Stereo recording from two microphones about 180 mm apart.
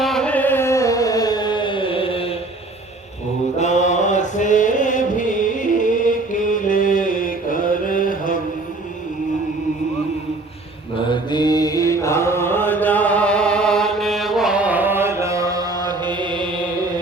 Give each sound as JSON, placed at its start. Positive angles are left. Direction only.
{"t": 0.0, "sound": "carnatic music", "side_deg": 5}
{"t": 3.6, "sound": "mantra", "side_deg": 40}
{"t": 11.1, "sound": "mantra", "side_deg": 25}